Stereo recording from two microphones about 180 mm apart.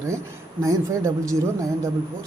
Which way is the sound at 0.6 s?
15° right (ahead or behind).